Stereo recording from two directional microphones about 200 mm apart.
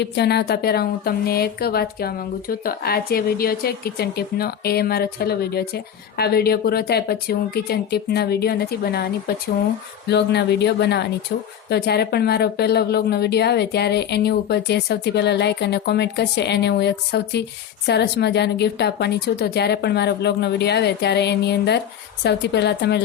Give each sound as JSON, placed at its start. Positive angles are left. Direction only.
{"t": 0.0, "sound": "a woman's voice", "side_deg": 55}